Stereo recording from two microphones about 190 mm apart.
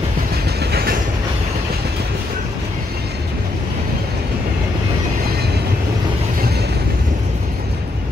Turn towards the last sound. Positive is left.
turn(degrees=-55)  # may be behind; listen again after turning